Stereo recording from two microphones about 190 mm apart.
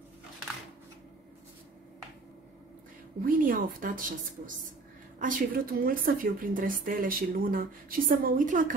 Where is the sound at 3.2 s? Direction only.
50° right (ahead or behind).